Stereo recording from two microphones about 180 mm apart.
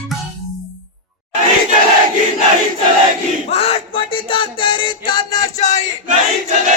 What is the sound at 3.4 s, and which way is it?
Music, 35° left (ahead or behind).